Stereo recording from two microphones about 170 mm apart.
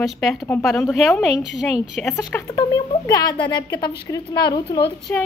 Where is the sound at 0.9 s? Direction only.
Centre (ahead or behind).